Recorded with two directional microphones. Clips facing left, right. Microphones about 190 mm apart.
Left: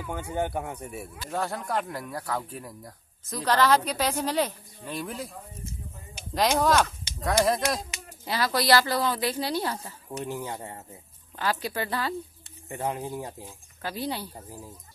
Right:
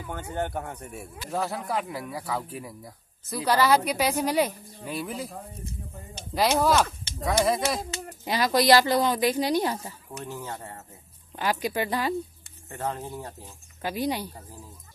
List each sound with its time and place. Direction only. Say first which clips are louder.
0.1 s speech: left 1 dB; 10° left (ahead or behind)
6.6 s speech: right 1 dB; 5° right (ahead or behind)
8.3 s a woman's voice: right 3 dB; 20° right (ahead or behind)
10.2 s speech: left 2 dB; 15° left (ahead or behind)
11.3 s a woman's voice: right 2 dB; 15° right (ahead or behind)
12.6 s speech: left 1 dB; 15° left (ahead or behind)
13.8 s a woman's voice: right 4 dB; 15° right (ahead or behind)